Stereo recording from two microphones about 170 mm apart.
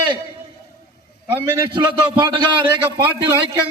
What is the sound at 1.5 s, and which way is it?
Music, 25° right (ahead or behind).